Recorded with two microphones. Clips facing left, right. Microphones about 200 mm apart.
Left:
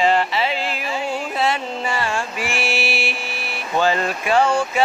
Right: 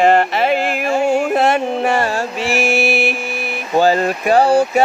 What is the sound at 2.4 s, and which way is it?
Mantra, 45° right (ahead or behind).